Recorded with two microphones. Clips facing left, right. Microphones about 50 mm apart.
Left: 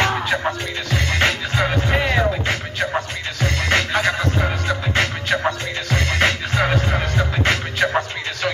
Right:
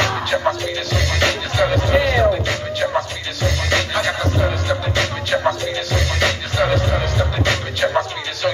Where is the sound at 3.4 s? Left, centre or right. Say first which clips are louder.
Even; left.